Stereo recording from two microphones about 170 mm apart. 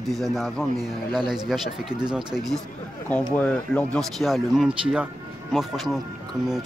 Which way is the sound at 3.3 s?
5° left (ahead or behind).